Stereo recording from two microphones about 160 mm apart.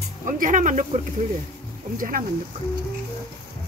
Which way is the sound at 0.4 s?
50° right (ahead or behind).